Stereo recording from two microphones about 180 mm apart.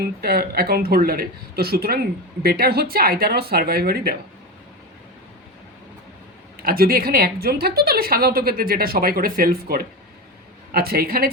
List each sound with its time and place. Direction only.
0.0 s a woman's voice: 60° right (ahead or behind)
6.6 s a woman's voice: 55° right (ahead or behind)